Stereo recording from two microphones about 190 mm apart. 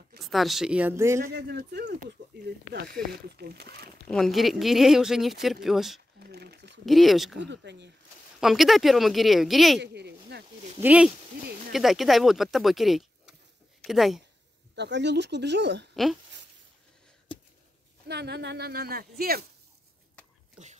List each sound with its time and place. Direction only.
0.2 s speech: centre (ahead or behind)
1.2 s speech: 55° right (ahead or behind)
4.1 s speech: centre (ahead or behind)
6.1 s a sound: 55° right (ahead or behind)
6.9 s speech: centre (ahead or behind)
7.3 s speech: 65° right (ahead or behind)
8.4 s speech: centre (ahead or behind)
9.8 s a sound: 60° right (ahead or behind)
10.8 s speech: 5° right (ahead or behind)
14.8 s speech: 65° right (ahead or behind)
18.0 s speech: 60° right (ahead or behind)